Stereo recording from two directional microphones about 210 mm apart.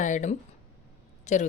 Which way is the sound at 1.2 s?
35° left (ahead or behind).